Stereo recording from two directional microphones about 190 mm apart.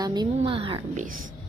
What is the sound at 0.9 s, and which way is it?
Speech, 45° right (ahead or behind).